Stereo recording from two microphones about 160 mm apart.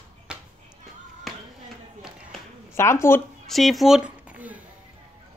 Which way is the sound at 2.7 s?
15° left (ahead or behind).